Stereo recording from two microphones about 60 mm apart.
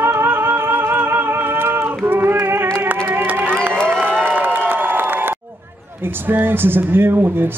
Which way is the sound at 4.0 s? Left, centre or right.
Right.